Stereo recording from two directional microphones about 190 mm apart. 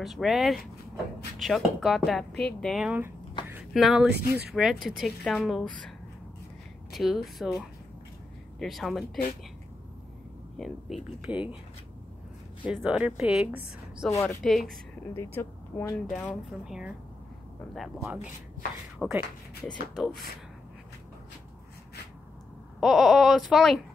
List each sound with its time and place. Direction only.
0.0 s speech: centre (ahead or behind)
3.4 s a sound: 5° right (ahead or behind)
4.5 s speech: centre (ahead or behind)
10.6 s speech: 5° right (ahead or behind)
12.6 s speech: 5° right (ahead or behind)
14.1 s a woman's voice: 15° left (ahead or behind)
14.4 s speech: centre (ahead or behind)
15.1 s speech: 10° left (ahead or behind); by 16.9 s 5° right (ahead or behind)
18.0 s speech: 5° right (ahead or behind)
22.8 s speech: centre (ahead or behind)